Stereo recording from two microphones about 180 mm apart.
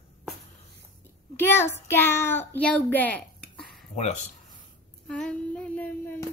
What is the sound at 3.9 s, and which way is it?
Speech, 40° left (ahead or behind).